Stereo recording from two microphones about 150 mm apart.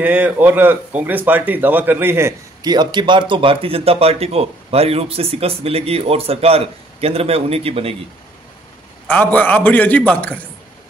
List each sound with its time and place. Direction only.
0.0 s a man's voice: 10° right (ahead or behind)
2.7 s speech: 30° right (ahead or behind)
9.0 s a man's voice: 10° left (ahead or behind)